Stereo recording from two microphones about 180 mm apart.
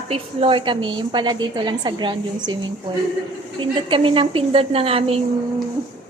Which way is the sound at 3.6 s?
30° right (ahead or behind).